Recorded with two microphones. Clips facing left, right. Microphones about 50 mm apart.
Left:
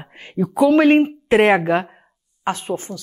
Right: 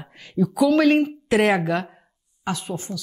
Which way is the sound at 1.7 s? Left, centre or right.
Left.